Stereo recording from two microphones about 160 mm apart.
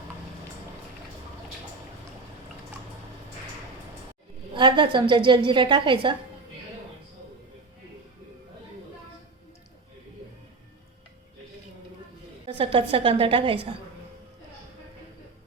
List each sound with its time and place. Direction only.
4.5 s a woman's voice: 30° right (ahead or behind)
12.5 s a woman's voice: 35° right (ahead or behind)